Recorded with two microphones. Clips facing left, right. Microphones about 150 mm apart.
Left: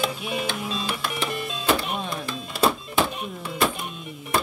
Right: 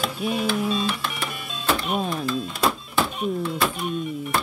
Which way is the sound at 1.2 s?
Centre (ahead or behind).